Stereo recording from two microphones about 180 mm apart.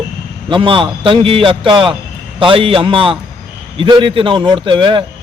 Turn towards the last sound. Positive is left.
turn(degrees=-30)  # may be behind; listen again after turning